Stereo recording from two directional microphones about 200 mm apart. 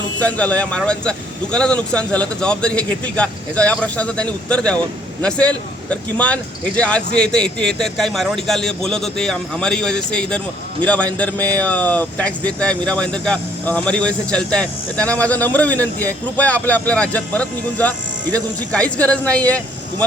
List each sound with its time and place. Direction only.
0.2 s speech: 5° left (ahead or behind)